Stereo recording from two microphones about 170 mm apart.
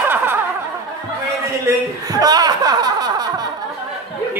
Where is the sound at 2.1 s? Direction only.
20° right (ahead or behind).